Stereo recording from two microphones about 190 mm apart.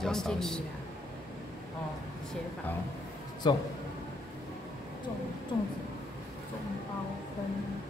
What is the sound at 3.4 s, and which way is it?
Speech, 25° left (ahead or behind).